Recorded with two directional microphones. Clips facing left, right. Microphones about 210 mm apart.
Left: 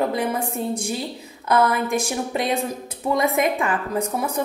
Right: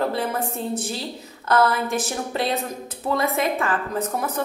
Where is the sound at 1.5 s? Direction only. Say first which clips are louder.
Left 1 dB; 15° left (ahead or behind).